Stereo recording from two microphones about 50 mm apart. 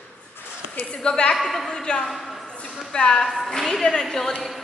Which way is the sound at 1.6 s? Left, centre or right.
Centre.